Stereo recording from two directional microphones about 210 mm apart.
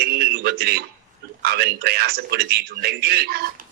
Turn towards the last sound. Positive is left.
turn(degrees=-50)  # may be behind; listen again after turning